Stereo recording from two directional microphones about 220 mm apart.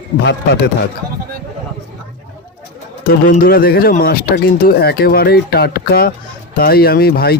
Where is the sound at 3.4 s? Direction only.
40° left (ahead or behind).